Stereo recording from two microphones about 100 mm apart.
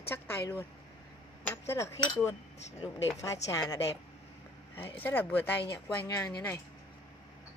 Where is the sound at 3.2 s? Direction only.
35° left (ahead or behind).